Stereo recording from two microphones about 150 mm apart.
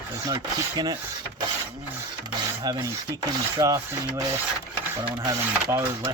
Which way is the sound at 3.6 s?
20° right (ahead or behind).